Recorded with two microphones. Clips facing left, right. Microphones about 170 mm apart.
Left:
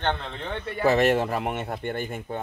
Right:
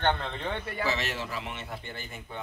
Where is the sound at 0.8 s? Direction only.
55° left (ahead or behind).